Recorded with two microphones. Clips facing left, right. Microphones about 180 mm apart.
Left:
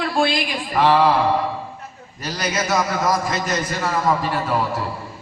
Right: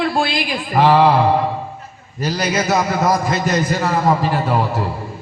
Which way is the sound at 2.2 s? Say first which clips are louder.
Right 5 dB; 30° right (ahead or behind).